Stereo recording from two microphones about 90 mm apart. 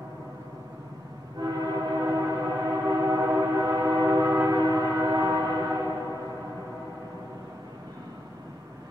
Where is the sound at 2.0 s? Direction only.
40° right (ahead or behind).